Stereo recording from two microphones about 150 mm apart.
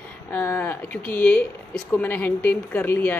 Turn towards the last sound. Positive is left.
turn(degrees=10)  # may be behind; listen again after turning